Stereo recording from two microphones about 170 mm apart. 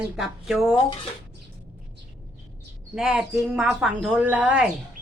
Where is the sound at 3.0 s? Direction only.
5° right (ahead or behind).